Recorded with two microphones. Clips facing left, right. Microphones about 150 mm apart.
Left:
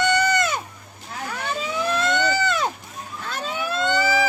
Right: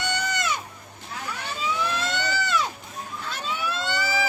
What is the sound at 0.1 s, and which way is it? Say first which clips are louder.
Goat: left 7 dB; 55° left (ahead or behind).